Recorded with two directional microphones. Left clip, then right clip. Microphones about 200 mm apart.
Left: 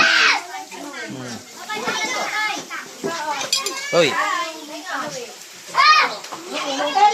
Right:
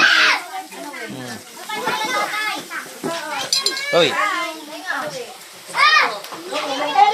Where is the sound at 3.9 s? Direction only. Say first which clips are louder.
Even; 20° left (ahead or behind).